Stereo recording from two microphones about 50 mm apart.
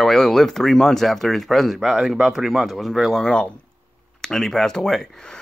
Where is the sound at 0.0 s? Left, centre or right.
Centre.